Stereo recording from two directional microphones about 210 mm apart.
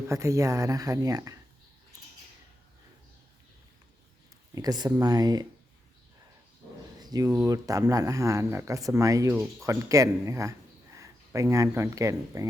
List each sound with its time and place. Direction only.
0.1 s speech: 15° right (ahead or behind)
4.5 s speech: 20° right (ahead or behind)
7.0 s speech: 15° right (ahead or behind)